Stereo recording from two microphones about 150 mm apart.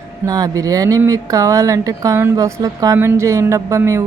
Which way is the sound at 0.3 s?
25° right (ahead or behind).